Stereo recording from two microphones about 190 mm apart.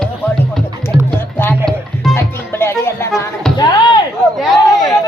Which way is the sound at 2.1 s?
10° left (ahead or behind).